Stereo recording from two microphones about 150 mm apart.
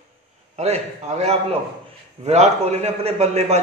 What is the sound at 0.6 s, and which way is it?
A man's voice, 45° right (ahead or behind).